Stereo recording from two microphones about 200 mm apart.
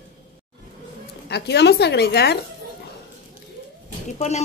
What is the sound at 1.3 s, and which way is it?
A woman's voice, 60° left (ahead or behind).